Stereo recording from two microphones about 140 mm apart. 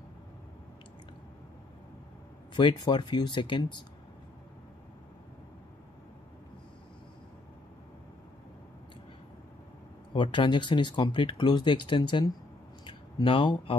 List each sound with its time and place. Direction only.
2.5 s speech: 30° left (ahead or behind)
10.1 s speech: 35° left (ahead or behind)
12.8 s a sound: 35° left (ahead or behind)